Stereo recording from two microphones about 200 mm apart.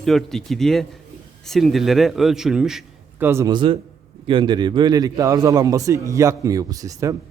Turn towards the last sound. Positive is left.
turn(degrees=-15)  # may be behind; listen again after turning